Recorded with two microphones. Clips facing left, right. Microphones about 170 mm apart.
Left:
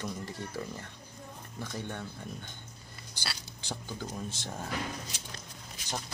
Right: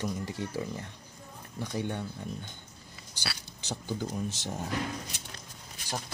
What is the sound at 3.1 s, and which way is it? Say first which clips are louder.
Speech: right 2 dB; 15° right (ahead or behind).